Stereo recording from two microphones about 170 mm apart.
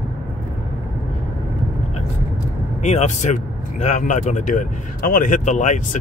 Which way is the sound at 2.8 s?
40° left (ahead or behind).